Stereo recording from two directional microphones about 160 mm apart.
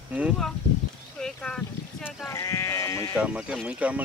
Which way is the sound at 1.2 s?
5° left (ahead or behind).